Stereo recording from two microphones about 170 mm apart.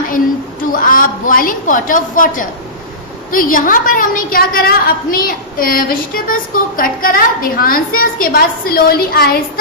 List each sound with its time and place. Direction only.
0.7 s a woman's voice: 55° left (ahead or behind)